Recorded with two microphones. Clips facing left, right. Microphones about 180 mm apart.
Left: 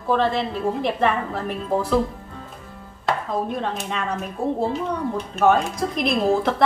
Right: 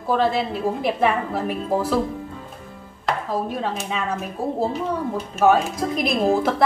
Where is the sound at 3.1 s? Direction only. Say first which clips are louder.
Even; 5° right (ahead or behind).